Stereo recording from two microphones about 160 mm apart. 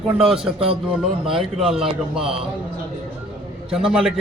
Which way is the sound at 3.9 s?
5° right (ahead or behind).